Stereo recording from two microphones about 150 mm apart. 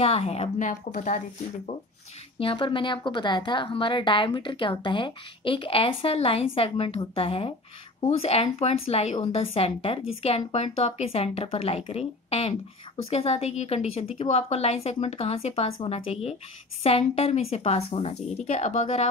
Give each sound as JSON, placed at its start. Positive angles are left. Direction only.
{"t": 0.0, "sound": "a woman's voice", "side_deg": 40}
{"t": 0.6, "sound": "speech", "side_deg": 55}
{"t": 2.3, "sound": "a woman's voice", "side_deg": 35}